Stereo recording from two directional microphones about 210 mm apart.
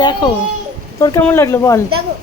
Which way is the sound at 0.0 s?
20° left (ahead or behind).